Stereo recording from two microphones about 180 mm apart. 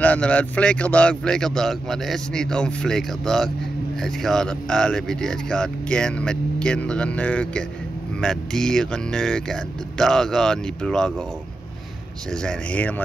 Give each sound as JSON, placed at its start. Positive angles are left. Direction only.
{"t": 0.0, "sound": "speech", "side_deg": 5}
{"t": 12.3, "sound": "speech", "side_deg": 5}